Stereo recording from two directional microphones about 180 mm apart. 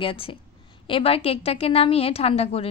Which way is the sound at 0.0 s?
30° left (ahead or behind).